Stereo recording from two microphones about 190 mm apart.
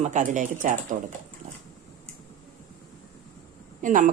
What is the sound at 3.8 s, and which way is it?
Speech, 40° right (ahead or behind).